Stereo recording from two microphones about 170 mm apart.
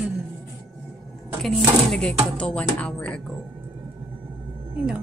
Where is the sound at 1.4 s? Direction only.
5° left (ahead or behind).